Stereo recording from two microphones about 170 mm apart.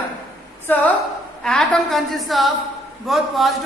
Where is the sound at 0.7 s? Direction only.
10° left (ahead or behind).